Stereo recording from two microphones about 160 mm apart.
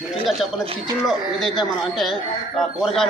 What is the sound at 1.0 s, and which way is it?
A man's voice, centre (ahead or behind).